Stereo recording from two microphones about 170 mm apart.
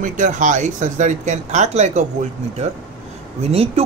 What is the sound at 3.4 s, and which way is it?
Speech, 35° right (ahead or behind).